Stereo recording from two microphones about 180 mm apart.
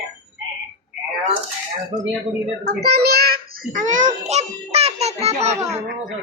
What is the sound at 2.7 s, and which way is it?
A child's voice, 60° right (ahead or behind).